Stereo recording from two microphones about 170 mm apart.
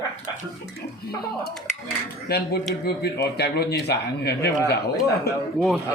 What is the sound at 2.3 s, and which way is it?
Speech, 65° left (ahead or behind).